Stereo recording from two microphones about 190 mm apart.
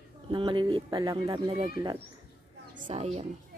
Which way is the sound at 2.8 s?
30° right (ahead or behind).